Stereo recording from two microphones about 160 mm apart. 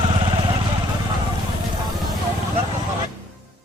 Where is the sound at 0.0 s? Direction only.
30° right (ahead or behind).